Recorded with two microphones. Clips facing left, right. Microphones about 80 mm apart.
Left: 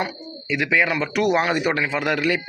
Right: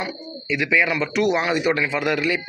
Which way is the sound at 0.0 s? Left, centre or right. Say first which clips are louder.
Left 2 dB; left.